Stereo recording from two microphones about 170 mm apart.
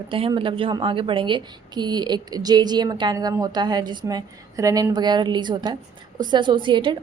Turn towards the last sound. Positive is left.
turn(degrees=-30)  # may be behind; listen again after turning